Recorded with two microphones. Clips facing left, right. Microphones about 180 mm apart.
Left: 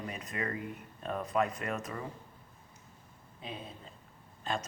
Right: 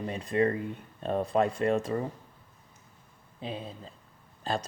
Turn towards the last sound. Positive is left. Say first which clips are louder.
# right 4 dB
turn(degrees=-35)  # may be behind; listen again after turning